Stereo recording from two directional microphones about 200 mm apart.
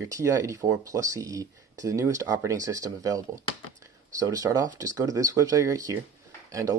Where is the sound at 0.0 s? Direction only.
15° right (ahead or behind).